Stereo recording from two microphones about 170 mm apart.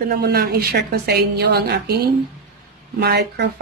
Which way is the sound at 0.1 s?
65° right (ahead or behind).